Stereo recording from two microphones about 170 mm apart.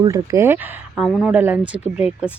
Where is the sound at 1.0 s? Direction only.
Centre (ahead or behind).